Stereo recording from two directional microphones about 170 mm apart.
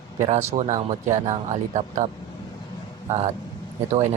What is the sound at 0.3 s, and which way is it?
Speech, 40° right (ahead or behind).